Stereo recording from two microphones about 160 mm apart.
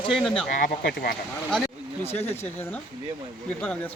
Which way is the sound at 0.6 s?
60° left (ahead or behind).